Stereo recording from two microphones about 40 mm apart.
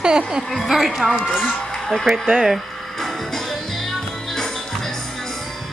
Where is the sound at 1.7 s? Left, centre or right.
Centre.